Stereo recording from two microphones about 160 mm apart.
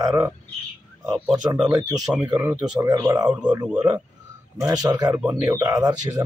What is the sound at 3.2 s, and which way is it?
Speech, 5° right (ahead or behind).